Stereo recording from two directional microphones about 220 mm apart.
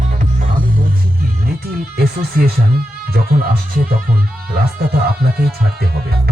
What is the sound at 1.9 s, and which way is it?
Music, 45° right (ahead or behind).